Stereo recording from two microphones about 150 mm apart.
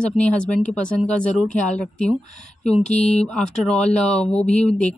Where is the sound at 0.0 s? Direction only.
5° left (ahead or behind).